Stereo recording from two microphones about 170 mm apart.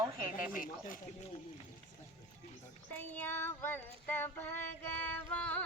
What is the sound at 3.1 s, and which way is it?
Child singing, 10° left (ahead or behind).